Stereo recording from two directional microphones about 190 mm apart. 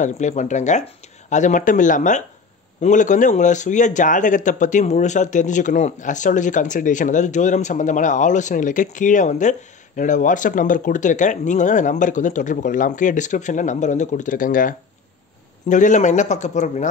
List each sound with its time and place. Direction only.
0.0 s speech: 40° left (ahead or behind)